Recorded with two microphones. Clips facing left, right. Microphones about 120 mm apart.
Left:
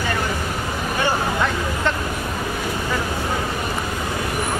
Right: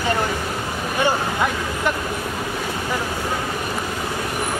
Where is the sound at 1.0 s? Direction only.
15° right (ahead or behind).